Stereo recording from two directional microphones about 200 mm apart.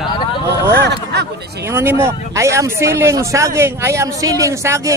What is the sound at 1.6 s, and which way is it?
Speech, 10° right (ahead or behind).